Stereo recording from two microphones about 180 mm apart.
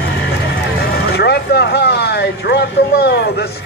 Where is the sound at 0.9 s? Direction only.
65° left (ahead or behind).